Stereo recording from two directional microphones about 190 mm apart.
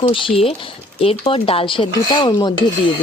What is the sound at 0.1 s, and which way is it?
Speech, 30° left (ahead or behind).